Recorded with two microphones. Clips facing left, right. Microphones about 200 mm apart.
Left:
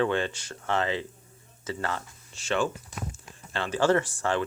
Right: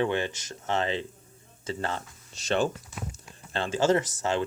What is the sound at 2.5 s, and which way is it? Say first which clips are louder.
Speech: right 1 dB; 35° right (ahead or behind).